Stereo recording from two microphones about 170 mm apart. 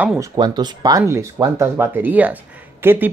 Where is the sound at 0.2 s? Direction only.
25° right (ahead or behind).